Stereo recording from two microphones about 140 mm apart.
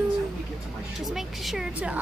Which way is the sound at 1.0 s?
Centre (ahead or behind).